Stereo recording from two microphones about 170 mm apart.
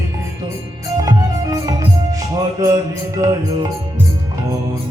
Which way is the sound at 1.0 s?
20° right (ahead or behind).